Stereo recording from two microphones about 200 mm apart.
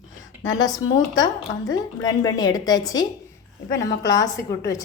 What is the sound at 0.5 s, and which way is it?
A woman's voice, 20° left (ahead or behind).